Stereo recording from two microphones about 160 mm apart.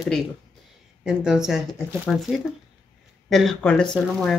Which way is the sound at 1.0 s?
5° right (ahead or behind).